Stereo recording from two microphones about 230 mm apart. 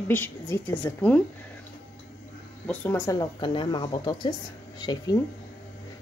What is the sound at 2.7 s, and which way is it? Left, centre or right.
Speech, centre.